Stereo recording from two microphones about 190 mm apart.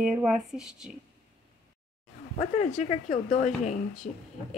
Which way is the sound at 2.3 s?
35° left (ahead or behind).